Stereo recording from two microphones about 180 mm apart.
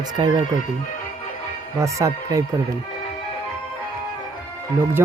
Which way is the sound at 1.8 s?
20° right (ahead or behind).